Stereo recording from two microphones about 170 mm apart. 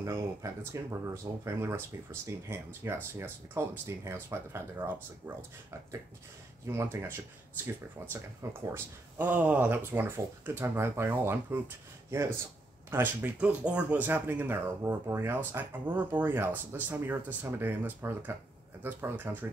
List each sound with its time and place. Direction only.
0.0 s speech: 20° right (ahead or behind)